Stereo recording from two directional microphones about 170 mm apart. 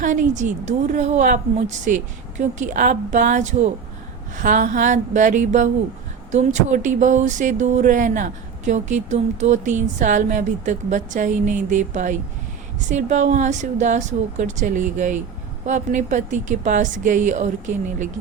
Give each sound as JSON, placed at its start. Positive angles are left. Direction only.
{"t": 0.0, "sound": "a woman's voice", "side_deg": -50}